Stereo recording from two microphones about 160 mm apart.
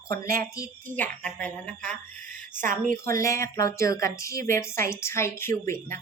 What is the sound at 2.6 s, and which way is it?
Speech, 55° right (ahead or behind).